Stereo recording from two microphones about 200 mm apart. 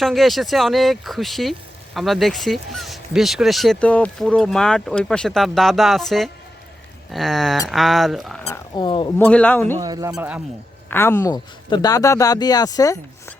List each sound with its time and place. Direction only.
0.0 s speech: centre (ahead or behind)
8.4 s speech: 15° left (ahead or behind)
9.1 s speech: 5° left (ahead or behind)
9.8 s speech: 20° right (ahead or behind)
10.2 s speech: 5° right (ahead or behind)
10.8 s speech: 10° left (ahead or behind)